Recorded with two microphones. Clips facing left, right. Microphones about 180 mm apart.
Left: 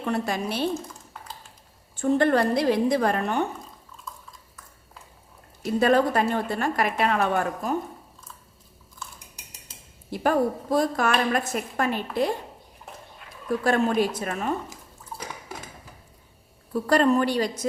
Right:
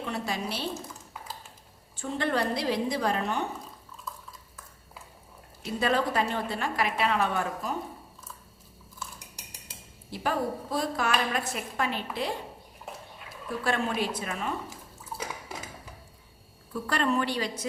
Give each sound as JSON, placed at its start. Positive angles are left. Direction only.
{"t": 0.0, "sound": "a woman's voice", "side_deg": 50}
{"t": 2.0, "sound": "a woman's voice", "side_deg": 50}
{"t": 4.0, "sound": "stir", "side_deg": 0}
{"t": 5.6, "sound": "a woman's voice", "side_deg": 50}
{"t": 10.1, "sound": "a woman's voice", "side_deg": 50}
{"t": 13.7, "sound": "a woman's voice", "side_deg": 45}
{"t": 15.1, "sound": "a sound", "side_deg": -5}
{"t": 16.7, "sound": "a woman's voice", "side_deg": 40}